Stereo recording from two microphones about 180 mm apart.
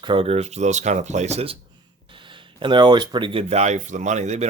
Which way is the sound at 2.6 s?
25° right (ahead or behind).